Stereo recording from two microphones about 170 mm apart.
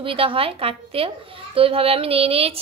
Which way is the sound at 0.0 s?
30° right (ahead or behind).